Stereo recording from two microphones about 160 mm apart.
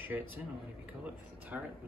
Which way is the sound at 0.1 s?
5° right (ahead or behind).